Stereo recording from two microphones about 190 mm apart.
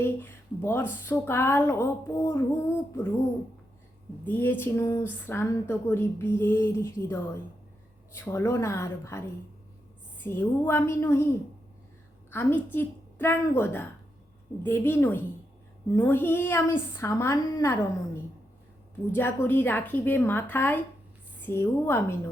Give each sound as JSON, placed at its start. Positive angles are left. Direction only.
{"t": 0.0, "sound": "speech", "side_deg": 10}
{"t": 4.3, "sound": "speech", "side_deg": 10}
{"t": 10.2, "sound": "speech", "side_deg": 10}
{"t": 12.3, "sound": "a woman's voice", "side_deg": 10}